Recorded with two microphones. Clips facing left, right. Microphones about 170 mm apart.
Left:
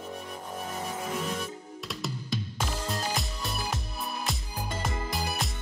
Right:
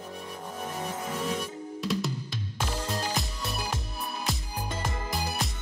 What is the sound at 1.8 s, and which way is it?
Music, centre (ahead or behind).